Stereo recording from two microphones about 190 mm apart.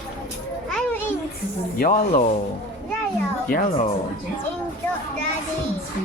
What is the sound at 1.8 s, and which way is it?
Speech, 45° left (ahead or behind).